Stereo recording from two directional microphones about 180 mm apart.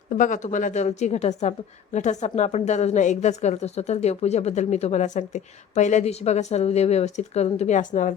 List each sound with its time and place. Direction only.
0.1 s a woman's voice: 45° left (ahead or behind)